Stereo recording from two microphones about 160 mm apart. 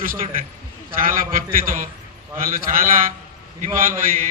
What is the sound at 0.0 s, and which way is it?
A man's voice, 60° right (ahead or behind).